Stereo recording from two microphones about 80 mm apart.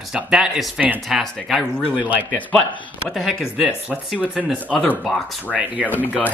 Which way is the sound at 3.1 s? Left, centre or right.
Centre.